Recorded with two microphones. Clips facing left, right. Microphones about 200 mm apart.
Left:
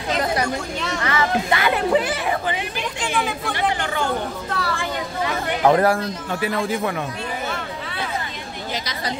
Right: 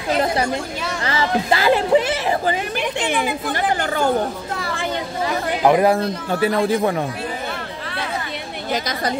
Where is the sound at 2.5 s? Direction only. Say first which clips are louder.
Right 4 dB; 45° right (ahead or behind).